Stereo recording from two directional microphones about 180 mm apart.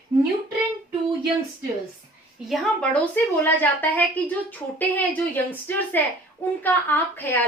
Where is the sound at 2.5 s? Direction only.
Centre (ahead or behind).